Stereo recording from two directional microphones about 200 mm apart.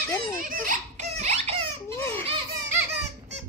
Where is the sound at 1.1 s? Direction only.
35° right (ahead or behind).